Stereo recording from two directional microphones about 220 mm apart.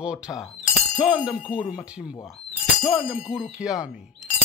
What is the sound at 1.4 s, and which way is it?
Speech, 5° right (ahead or behind).